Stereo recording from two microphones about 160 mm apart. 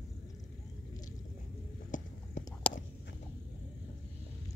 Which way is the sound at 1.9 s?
50° left (ahead or behind).